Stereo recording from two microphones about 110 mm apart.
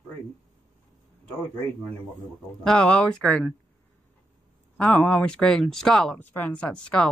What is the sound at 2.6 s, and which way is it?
Speech, 10° left (ahead or behind).